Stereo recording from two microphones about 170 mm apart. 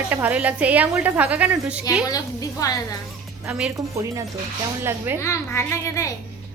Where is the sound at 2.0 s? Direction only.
20° left (ahead or behind).